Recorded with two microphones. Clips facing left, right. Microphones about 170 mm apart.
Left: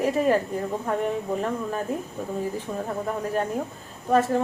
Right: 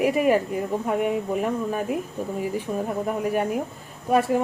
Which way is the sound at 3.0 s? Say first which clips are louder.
Right 2 dB; 15° right (ahead or behind).